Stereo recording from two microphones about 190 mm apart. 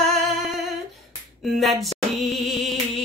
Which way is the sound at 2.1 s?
Centre (ahead or behind).